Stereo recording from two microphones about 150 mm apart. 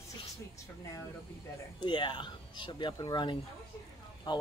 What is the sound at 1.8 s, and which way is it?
Speech, 30° left (ahead or behind).